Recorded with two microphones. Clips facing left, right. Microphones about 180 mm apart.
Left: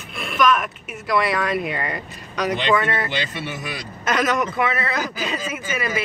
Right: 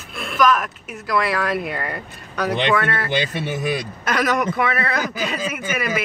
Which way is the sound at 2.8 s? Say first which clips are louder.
Even; 20° left (ahead or behind).